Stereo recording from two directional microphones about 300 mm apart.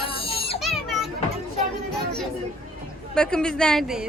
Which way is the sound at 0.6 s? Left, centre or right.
Centre.